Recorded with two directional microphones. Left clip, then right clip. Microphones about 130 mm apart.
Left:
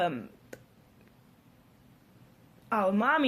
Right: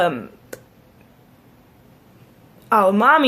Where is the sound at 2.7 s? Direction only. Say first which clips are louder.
Right 13 dB; 35° right (ahead or behind).